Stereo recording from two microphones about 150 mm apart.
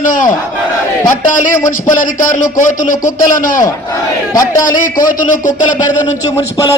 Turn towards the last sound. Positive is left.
turn(degrees=60)  # may be behind; listen again after turning